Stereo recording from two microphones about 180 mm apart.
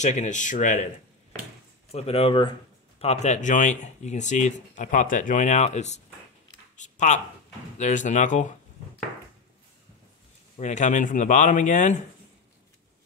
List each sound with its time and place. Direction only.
0.0 s speech: 40° left (ahead or behind)
1.9 s speech: 35° left (ahead or behind)
10.6 s speech: 40° left (ahead or behind)